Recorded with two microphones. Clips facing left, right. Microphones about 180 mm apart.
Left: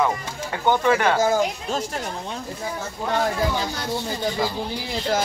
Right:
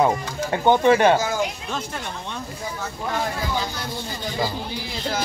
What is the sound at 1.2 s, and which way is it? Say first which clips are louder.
Speech: left 4 dB; 30° left (ahead or behind).